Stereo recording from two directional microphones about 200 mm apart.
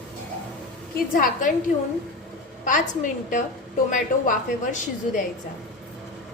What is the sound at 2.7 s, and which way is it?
A woman's voice, 40° left (ahead or behind).